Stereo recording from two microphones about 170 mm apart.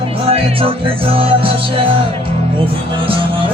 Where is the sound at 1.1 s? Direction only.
35° right (ahead or behind).